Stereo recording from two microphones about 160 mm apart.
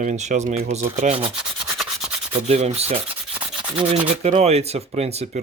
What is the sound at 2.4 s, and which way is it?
Speech, 45° right (ahead or behind).